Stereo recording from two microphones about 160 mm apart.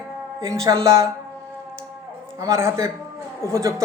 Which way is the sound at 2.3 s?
20° right (ahead or behind).